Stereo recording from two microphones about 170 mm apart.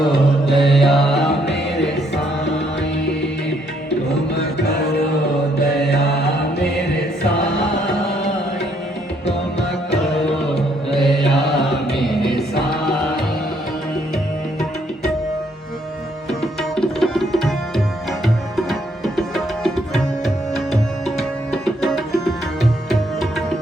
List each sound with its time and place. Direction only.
0.4 s music: centre (ahead or behind)
1.5 s music: 90° left
5.8 s mantra: 75° left (ahead or behind)
10.5 s music: centre (ahead or behind)
11.3 s mantra: centre (ahead or behind)
12.8 s music: 5° left (ahead or behind)
16.4 s tabla: centre (ahead or behind)
18.5 s tabla: centre (ahead or behind)